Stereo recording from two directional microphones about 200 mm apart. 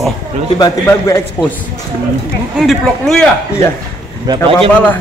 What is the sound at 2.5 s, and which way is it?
Speech, centre (ahead or behind).